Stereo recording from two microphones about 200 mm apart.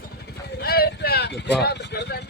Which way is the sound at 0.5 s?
50° left (ahead or behind).